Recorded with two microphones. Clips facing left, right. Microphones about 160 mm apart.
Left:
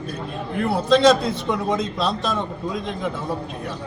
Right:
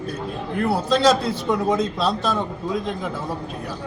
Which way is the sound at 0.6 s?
Centre (ahead or behind).